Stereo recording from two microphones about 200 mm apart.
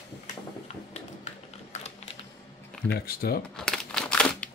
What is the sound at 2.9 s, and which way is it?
Speech, 50° left (ahead or behind).